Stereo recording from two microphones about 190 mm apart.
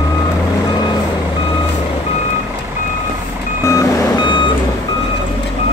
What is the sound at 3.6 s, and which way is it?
Reversing beeps, 15° left (ahead or behind).